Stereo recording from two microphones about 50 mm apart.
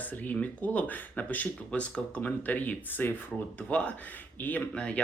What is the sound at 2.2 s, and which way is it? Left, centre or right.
Speech, left.